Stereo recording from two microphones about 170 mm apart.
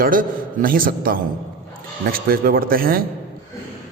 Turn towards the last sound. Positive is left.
turn(degrees=-60)  # may be behind; listen again after turning